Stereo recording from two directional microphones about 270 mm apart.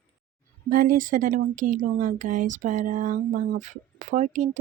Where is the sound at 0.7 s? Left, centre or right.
Right.